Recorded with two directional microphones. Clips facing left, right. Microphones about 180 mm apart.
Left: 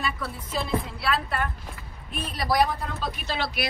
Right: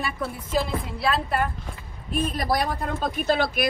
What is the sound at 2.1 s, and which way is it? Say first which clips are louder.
A woman's voice: right 3 dB; 45° right (ahead or behind).